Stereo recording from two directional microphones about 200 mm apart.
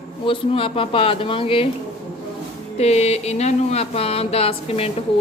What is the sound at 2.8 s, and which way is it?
A woman's voice, 30° left (ahead or behind).